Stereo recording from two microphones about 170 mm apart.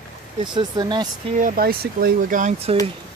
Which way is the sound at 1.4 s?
60° right (ahead or behind).